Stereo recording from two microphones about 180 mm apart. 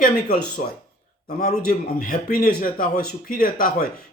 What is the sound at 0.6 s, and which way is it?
Speech, 45° left (ahead or behind).